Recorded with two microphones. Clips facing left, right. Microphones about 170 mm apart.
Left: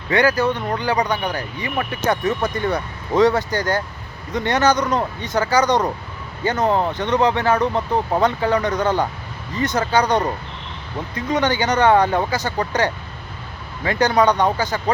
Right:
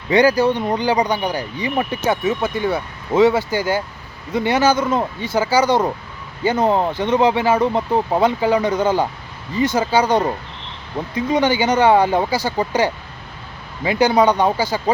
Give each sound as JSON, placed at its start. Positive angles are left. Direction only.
{"t": 0.1, "sound": "speech", "side_deg": -15}
{"t": 2.0, "sound": "speech", "side_deg": -5}